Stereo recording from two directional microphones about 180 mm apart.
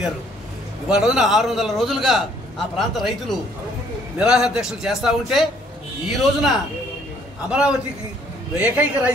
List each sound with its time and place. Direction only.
0.8 s a man's voice: 5° right (ahead or behind)